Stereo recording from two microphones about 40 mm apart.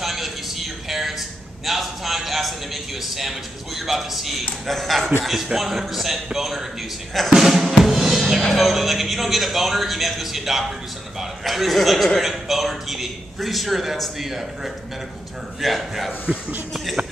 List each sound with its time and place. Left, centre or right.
0.0 s a sound: centre
1.7 s a man's voice: centre
7.3 s drum: centre
8.5 s a man's voice: centre
16.1 s speech: right